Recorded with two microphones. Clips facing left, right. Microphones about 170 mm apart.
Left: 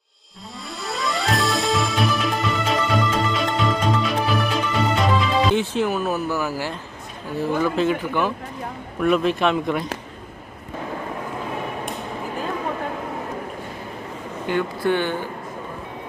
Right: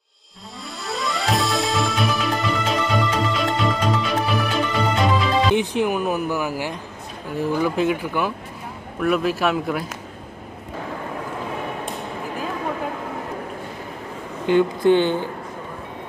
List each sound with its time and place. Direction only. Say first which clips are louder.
0.8 s music: even; centre (ahead or behind)
5.5 s speech: right 1 dB; 15° right (ahead or behind)
14.4 s speech: right 6 dB; 20° right (ahead or behind)